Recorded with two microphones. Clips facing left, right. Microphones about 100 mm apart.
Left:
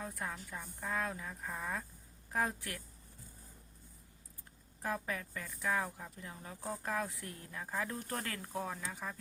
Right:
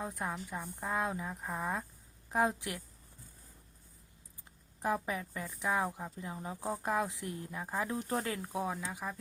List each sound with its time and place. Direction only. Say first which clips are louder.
0.0 s speech: right 4 dB; 20° right (ahead or behind)
4.8 s speech: right 5 dB; 20° right (ahead or behind)